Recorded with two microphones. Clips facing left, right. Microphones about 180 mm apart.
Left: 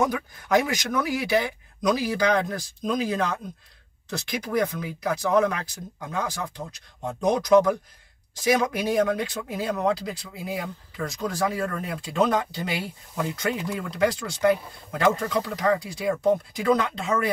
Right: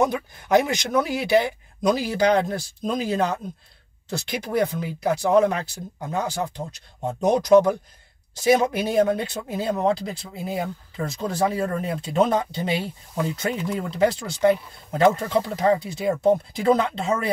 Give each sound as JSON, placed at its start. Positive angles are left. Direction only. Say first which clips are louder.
{"t": 0.1, "sound": "speech", "louder": "right 3 dB", "side_deg": -25}
{"t": 4.3, "sound": "speech", "louder": "right 2 dB", "side_deg": -25}